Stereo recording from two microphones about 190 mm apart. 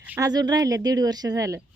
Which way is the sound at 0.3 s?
20° right (ahead or behind).